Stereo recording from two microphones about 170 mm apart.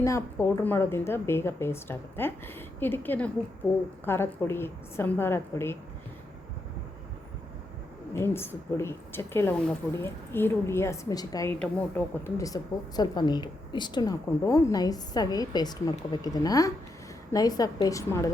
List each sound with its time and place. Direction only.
0.0 s a woman's voice: 15° left (ahead or behind)
8.1 s a woman's voice: 15° left (ahead or behind)
11.6 s a woman's voice: 10° left (ahead or behind)